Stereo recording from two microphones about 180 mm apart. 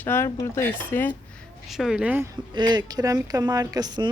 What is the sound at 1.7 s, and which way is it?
Speech, centre (ahead or behind).